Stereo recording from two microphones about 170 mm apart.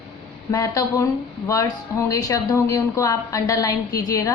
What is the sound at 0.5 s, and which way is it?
A woman's voice, 20° left (ahead or behind).